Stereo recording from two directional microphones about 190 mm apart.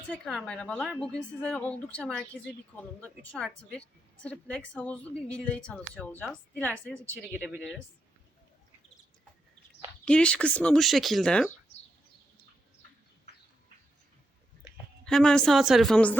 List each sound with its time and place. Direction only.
0.1 s a woman's voice: 5° left (ahead or behind)
7.3 s speech: 5° right (ahead or behind)
10.1 s speech: 5° left (ahead or behind)
15.0 s speech: 5° left (ahead or behind)